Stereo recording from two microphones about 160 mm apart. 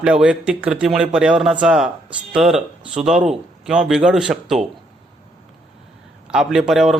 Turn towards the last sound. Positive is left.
turn(degrees=-5)  # may be behind; listen again after turning